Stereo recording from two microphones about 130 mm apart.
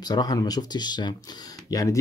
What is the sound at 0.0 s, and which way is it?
Speech, 30° left (ahead or behind).